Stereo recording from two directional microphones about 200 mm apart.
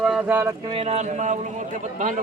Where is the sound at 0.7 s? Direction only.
30° right (ahead or behind).